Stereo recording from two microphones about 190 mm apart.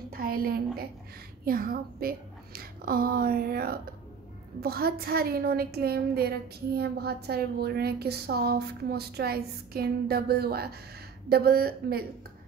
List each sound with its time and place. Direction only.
0.1 s a woman's voice: 50° right (ahead or behind)